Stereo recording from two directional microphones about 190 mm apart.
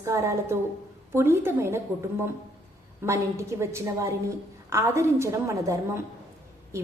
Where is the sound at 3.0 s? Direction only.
15° right (ahead or behind).